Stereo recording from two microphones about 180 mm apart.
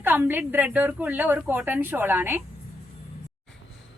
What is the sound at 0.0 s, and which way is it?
A woman's voice, 10° right (ahead or behind).